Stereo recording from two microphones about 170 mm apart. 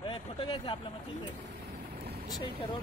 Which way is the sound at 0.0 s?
30° left (ahead or behind).